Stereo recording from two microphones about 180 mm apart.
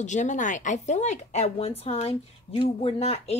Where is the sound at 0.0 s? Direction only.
40° left (ahead or behind).